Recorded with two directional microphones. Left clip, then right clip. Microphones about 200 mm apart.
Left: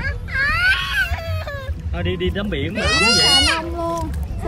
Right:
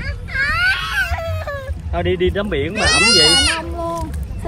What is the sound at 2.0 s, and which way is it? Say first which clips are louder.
Speech: right 6 dB; 50° right (ahead or behind).